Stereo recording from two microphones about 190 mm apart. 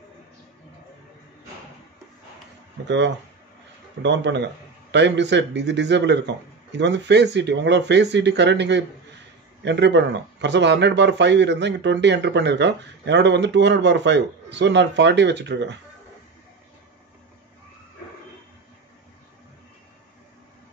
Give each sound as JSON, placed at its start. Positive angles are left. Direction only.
{"t": 4.0, "sound": "a man's voice", "side_deg": -65}